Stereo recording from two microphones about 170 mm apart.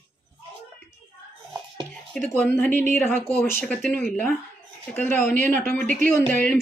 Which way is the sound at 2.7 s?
45° right (ahead or behind).